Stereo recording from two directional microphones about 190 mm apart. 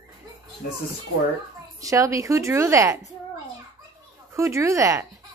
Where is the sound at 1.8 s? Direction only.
15° right (ahead or behind).